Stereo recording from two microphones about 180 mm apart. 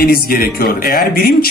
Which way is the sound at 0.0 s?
55° left (ahead or behind).